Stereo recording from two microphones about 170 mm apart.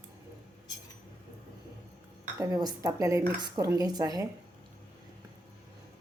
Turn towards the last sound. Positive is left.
turn(degrees=-25)  # may be behind; listen again after turning